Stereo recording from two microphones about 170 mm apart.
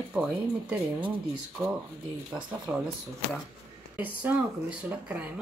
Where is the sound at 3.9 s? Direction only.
10° right (ahead or behind).